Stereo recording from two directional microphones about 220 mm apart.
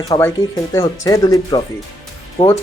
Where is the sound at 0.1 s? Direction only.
10° left (ahead or behind).